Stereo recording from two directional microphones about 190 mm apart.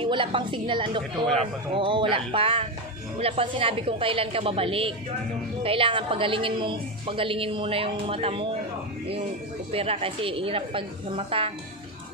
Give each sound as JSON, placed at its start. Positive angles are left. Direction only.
{"t": 0.0, "sound": "a woman's voice", "side_deg": -25}
{"t": 9.7, "sound": "a woman's voice", "side_deg": -30}